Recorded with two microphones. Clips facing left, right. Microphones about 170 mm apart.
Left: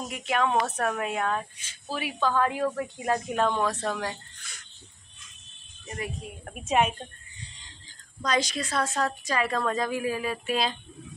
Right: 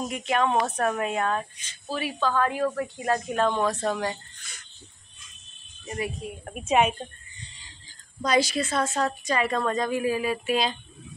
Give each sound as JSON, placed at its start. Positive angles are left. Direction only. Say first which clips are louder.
{"t": 0.1, "sound": "a woman's voice", "louder": "even", "side_deg": 5}
{"t": 3.4, "sound": "speech", "louder": "right 4 dB", "side_deg": 0}
{"t": 5.9, "sound": "a woman's voice", "louder": "right 4 dB", "side_deg": -10}
{"t": 8.2, "sound": "a woman's voice", "louder": "right 4 dB", "side_deg": -10}